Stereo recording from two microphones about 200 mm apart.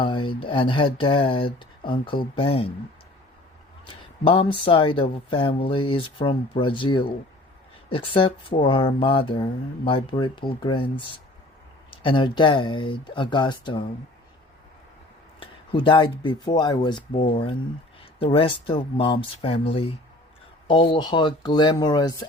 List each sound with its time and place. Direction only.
0.0 s speech: 25° left (ahead or behind)
3.8 s speech: 25° left (ahead or behind)
15.4 s speech: 25° left (ahead or behind)